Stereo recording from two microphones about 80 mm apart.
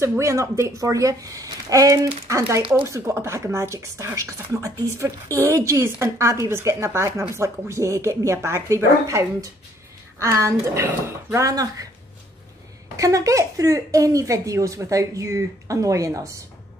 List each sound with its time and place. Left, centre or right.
0.2 s a woman's voice: right
12.9 s speech: right